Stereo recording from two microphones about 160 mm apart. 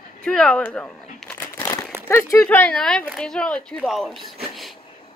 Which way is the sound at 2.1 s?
15° left (ahead or behind).